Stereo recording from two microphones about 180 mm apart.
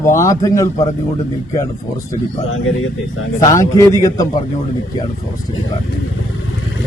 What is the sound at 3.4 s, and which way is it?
Speech, 15° left (ahead or behind).